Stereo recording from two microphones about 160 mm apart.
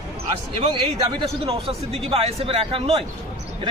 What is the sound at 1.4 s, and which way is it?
A man's voice, 40° right (ahead or behind).